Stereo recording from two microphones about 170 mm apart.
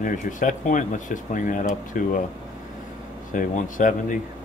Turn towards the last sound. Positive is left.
turn(degrees=50)  # may be behind; listen again after turning